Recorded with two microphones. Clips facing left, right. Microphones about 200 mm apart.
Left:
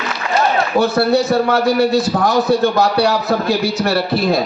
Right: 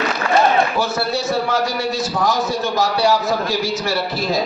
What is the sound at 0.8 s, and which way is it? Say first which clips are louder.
A man's voice: left 7 dB; 60° left (ahead or behind).